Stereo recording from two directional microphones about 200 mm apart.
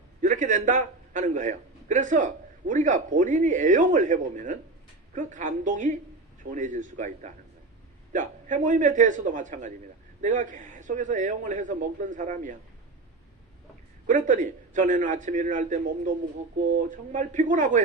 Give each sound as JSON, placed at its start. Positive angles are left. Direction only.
{"t": 0.2, "sound": "a man's voice", "side_deg": -40}
{"t": 14.1, "sound": "a man's voice", "side_deg": -40}